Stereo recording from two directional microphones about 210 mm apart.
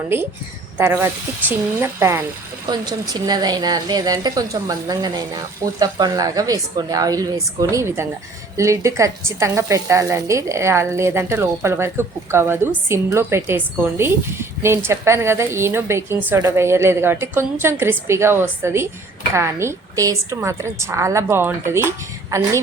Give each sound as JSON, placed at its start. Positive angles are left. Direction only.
{"t": 0.1, "sound": "a woman's voice", "side_deg": -10}